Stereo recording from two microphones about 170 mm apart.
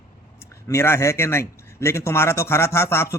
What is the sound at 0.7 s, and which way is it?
Speech, 15° left (ahead or behind).